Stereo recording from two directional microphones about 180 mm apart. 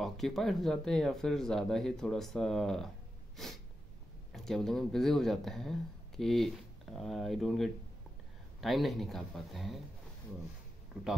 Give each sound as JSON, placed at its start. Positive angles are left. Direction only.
{"t": 0.0, "sound": "speech", "side_deg": 0}